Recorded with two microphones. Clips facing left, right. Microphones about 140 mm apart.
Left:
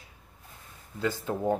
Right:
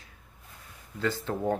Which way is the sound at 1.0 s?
10° left (ahead or behind).